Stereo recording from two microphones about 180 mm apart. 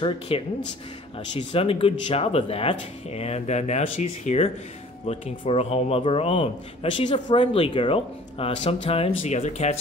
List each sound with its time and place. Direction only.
0.3 s speech: 30° left (ahead or behind)